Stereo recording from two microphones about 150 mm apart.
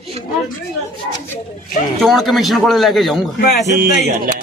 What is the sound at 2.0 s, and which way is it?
Speech, centre (ahead or behind).